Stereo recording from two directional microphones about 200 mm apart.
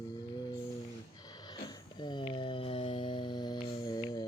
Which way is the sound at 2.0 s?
25° left (ahead or behind).